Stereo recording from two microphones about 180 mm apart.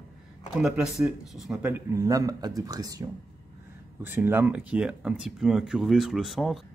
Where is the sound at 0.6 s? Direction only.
5° right (ahead or behind).